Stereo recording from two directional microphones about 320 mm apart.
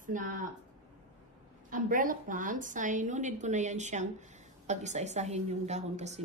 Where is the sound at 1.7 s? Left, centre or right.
Right.